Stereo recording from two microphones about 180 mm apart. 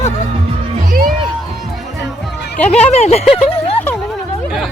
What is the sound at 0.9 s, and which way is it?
Music, 50° right (ahead or behind).